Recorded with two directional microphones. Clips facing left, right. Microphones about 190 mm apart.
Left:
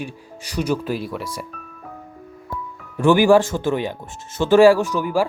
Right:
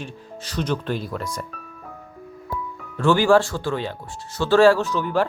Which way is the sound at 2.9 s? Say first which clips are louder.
Left 3 dB; 15° left (ahead or behind).